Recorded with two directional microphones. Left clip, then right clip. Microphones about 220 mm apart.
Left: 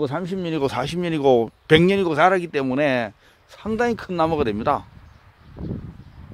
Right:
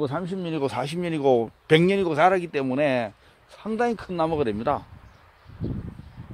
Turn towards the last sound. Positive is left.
turn(degrees=25)  # may be behind; listen again after turning